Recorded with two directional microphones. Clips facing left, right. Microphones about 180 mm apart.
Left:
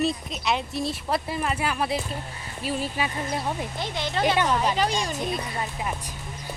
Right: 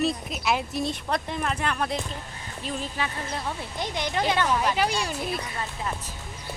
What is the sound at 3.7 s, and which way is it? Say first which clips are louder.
Speech: even; 15° right (ahead or behind).